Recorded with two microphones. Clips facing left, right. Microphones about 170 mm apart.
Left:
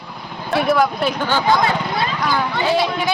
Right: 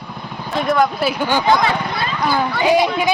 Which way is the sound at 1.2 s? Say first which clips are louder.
Right 2 dB; 15° right (ahead or behind).